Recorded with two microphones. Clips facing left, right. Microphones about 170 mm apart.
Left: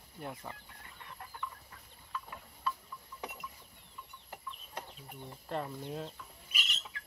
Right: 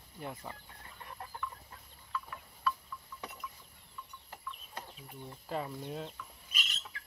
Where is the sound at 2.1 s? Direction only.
20° left (ahead or behind).